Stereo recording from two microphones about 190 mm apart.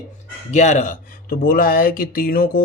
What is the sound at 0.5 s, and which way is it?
Speech, 40° left (ahead or behind).